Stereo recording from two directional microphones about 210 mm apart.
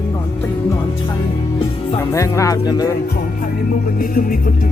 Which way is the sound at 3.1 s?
40° left (ahead or behind).